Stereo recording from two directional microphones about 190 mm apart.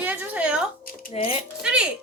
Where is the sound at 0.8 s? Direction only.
35° left (ahead or behind).